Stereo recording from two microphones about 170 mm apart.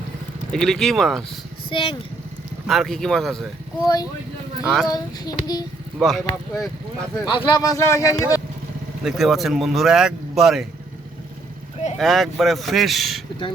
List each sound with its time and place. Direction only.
0.5 s speech: centre (ahead or behind)
1.7 s speech: 30° left (ahead or behind)
2.6 s speech: centre (ahead or behind)
3.8 s speech: 20° left (ahead or behind)
4.6 s speech: centre (ahead or behind)
4.9 s speech: 25° left (ahead or behind)
6.0 s speech: centre (ahead or behind)
7.3 s speech: 25° left (ahead or behind)
9.0 s speech: centre (ahead or behind)
11.9 s speech: centre (ahead or behind)